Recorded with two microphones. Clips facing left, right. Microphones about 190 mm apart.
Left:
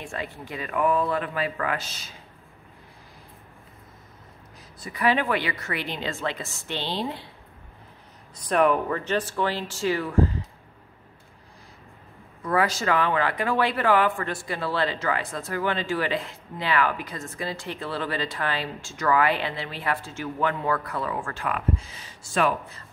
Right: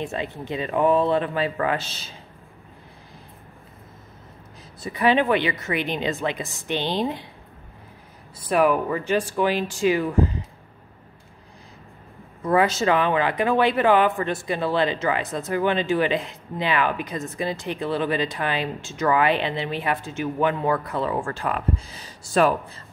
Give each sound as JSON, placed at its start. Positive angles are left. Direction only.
{"t": 0.0, "sound": "speech", "side_deg": -20}
{"t": 4.8, "sound": "speech", "side_deg": -25}
{"t": 8.4, "sound": "speech", "side_deg": -5}
{"t": 12.4, "sound": "speech", "side_deg": -25}